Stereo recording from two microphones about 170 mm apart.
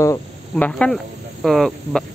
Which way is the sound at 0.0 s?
15° left (ahead or behind).